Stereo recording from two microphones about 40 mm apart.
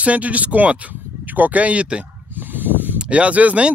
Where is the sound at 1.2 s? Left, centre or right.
Right.